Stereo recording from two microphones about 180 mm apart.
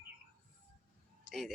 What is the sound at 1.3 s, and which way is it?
Speech, centre (ahead or behind).